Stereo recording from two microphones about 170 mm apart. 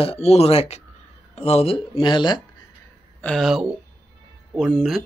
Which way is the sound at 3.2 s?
Centre (ahead or behind).